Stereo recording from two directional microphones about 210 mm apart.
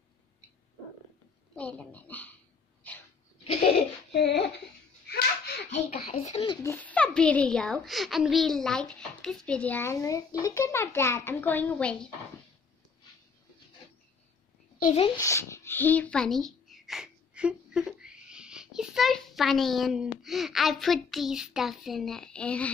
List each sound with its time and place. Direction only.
1.5 s a woman's voice: 5° left (ahead or behind)
3.6 s a sound: 50° left (ahead or behind)
5.7 s a child's voice: 30° left (ahead or behind); by 12.1 s 5° left (ahead or behind)
15.0 s a child's voice: 15° left (ahead or behind)